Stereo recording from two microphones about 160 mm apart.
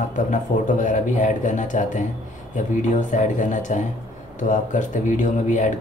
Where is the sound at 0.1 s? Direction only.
50° left (ahead or behind).